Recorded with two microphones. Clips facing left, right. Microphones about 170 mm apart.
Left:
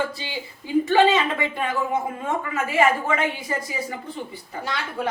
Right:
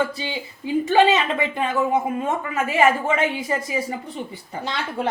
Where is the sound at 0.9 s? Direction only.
20° right (ahead or behind).